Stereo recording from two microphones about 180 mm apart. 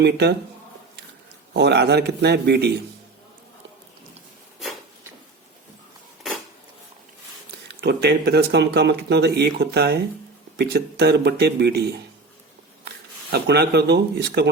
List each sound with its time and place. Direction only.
0.0 s speech: 65° right (ahead or behind)
1.5 s speech: 70° right (ahead or behind)
7.8 s speech: 65° right (ahead or behind)
13.3 s speech: 65° right (ahead or behind)